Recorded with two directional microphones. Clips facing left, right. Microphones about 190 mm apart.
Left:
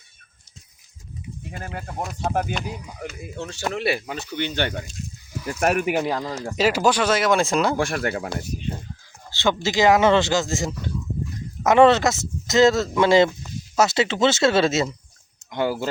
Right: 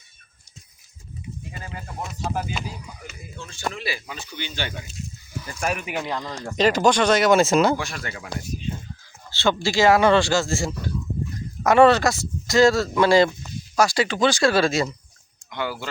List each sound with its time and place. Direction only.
1.5 s speech: 60° left (ahead or behind)
6.4 s speech: 5° left (ahead or behind)
7.8 s speech: 55° left (ahead or behind)
9.3 s speech: 15° left (ahead or behind)
15.4 s speech: 40° left (ahead or behind)